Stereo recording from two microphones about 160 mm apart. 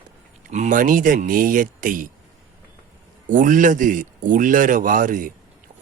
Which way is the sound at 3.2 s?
55° right (ahead or behind).